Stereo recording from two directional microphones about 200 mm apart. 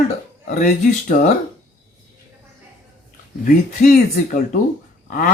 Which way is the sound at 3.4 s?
45° left (ahead or behind).